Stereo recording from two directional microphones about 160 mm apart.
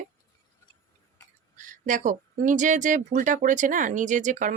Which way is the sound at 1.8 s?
50° right (ahead or behind).